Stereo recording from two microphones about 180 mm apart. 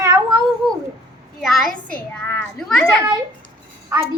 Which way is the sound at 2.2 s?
10° left (ahead or behind).